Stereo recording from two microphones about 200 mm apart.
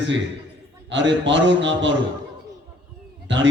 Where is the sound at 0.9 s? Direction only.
65° right (ahead or behind).